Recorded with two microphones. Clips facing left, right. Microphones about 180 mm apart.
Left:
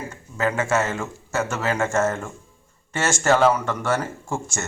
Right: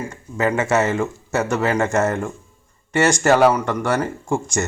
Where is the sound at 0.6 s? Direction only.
20° right (ahead or behind).